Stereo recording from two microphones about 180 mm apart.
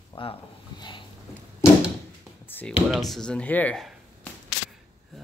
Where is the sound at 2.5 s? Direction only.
10° left (ahead or behind).